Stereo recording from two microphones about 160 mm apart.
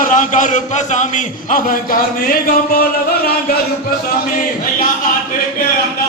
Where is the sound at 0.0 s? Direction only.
55° left (ahead or behind).